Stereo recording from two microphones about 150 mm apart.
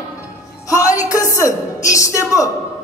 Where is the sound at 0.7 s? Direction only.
20° left (ahead or behind).